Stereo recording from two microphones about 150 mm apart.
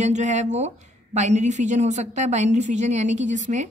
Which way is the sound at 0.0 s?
50° right (ahead or behind).